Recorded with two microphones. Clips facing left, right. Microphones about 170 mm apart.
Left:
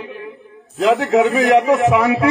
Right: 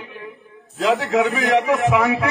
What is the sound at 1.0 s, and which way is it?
Speech, 20° left (ahead or behind).